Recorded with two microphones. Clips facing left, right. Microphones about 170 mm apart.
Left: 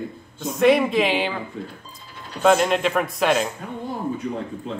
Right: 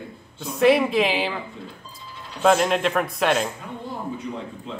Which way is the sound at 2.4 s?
Centre (ahead or behind).